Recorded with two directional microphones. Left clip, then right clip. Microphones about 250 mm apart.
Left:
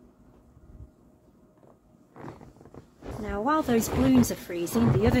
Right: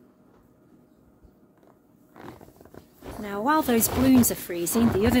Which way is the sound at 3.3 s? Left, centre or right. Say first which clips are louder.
Right 3 dB; right.